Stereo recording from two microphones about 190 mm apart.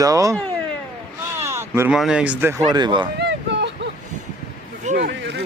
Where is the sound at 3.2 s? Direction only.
65° right (ahead or behind).